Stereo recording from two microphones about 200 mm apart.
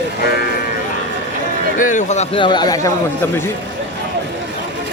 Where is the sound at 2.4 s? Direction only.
20° left (ahead or behind).